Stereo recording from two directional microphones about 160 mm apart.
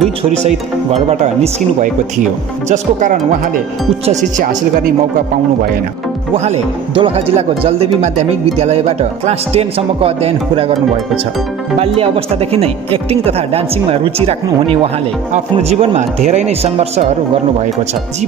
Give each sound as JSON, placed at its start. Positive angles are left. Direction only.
{"t": 0.9, "sound": "speech", "side_deg": -40}
{"t": 2.7, "sound": "speech", "side_deg": -55}
{"t": 6.3, "sound": "speech", "side_deg": -40}
{"t": 11.8, "sound": "speech", "side_deg": -40}